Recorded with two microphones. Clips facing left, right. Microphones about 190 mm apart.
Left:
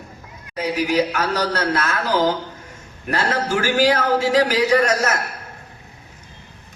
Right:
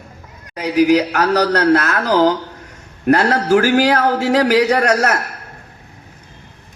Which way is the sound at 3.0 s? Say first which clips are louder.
Right 8 dB; 65° right (ahead or behind).